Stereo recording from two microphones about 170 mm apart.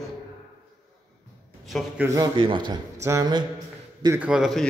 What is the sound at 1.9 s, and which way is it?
A man's voice, 15° right (ahead or behind).